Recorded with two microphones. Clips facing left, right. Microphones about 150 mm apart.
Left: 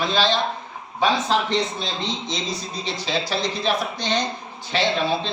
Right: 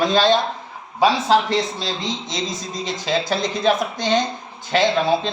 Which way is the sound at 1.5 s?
90° right.